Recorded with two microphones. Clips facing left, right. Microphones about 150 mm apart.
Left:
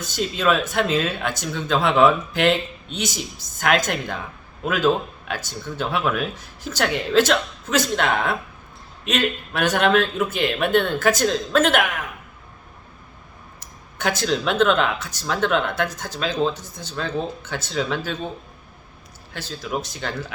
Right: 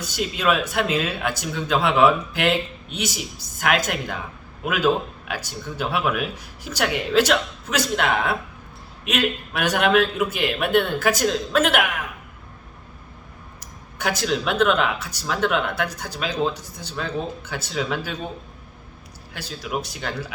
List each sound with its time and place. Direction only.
0.1 s speech: 5° right (ahead or behind)
14.0 s speech: 10° right (ahead or behind)
19.3 s speech: 10° right (ahead or behind)